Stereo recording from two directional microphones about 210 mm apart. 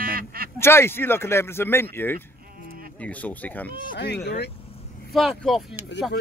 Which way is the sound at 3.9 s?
55° left (ahead or behind).